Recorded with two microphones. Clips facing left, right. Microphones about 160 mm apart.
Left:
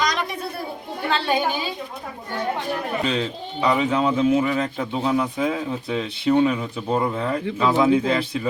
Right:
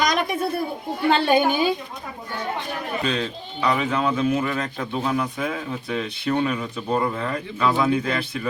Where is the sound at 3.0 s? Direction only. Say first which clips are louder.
Left 1 dB; 25° left (ahead or behind).